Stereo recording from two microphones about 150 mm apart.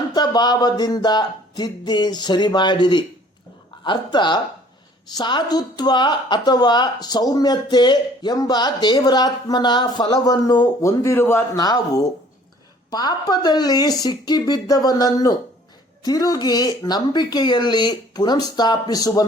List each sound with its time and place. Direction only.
0.1 s a woman's voice: 30° left (ahead or behind)